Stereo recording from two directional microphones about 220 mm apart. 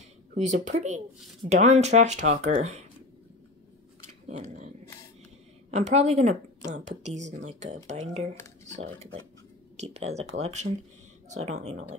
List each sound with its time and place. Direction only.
0.3 s speech: 35° right (ahead or behind)
4.3 s speech: 30° right (ahead or behind)
5.7 s speech: 30° right (ahead or behind)
9.8 s speech: 30° right (ahead or behind)